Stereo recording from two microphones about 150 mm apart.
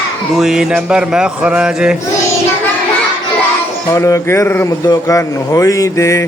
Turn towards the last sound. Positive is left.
turn(degrees=20)  # may be behind; listen again after turning